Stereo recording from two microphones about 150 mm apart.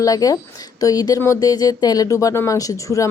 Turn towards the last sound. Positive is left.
turn(degrees=20)  # may be behind; listen again after turning